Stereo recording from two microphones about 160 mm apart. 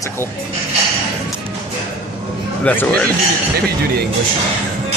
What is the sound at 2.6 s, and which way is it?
Speech, 10° left (ahead or behind).